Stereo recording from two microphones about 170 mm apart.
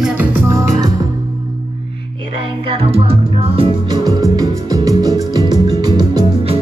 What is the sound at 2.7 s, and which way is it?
Music, 35° right (ahead or behind).